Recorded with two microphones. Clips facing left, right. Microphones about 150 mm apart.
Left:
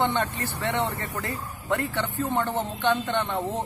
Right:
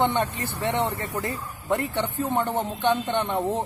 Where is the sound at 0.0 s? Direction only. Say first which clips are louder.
Right 2 dB; 15° right (ahead or behind).